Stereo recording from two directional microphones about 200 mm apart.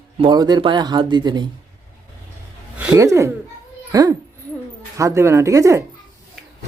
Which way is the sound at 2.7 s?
5° right (ahead or behind).